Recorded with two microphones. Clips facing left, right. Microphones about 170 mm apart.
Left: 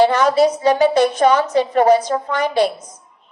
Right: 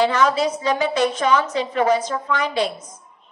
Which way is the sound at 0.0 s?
35° left (ahead or behind).